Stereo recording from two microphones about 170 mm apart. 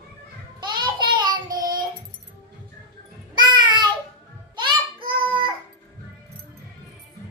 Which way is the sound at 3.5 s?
25° right (ahead or behind).